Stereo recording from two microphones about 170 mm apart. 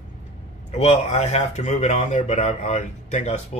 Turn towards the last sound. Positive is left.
turn(degrees=40)  # may be behind; listen again after turning